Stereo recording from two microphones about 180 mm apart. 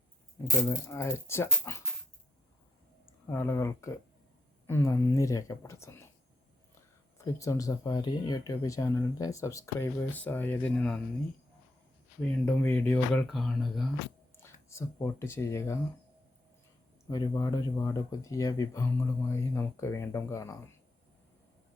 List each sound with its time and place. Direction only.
0.7 s speech: 15° left (ahead or behind)
3.2 s speech: 15° left (ahead or behind)
7.2 s speech: 15° left (ahead or behind)
12.2 s speech: 10° left (ahead or behind)
14.3 s speech: 15° left (ahead or behind)
17.1 s speech: 20° left (ahead or behind)